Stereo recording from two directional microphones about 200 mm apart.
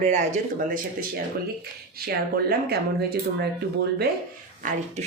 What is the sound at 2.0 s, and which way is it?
Speech, 50° right (ahead or behind).